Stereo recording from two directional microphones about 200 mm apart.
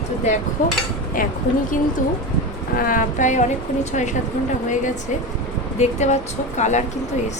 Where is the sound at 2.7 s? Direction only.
45° left (ahead or behind).